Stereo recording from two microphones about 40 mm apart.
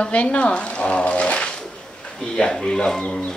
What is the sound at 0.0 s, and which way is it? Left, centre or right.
Speech, left.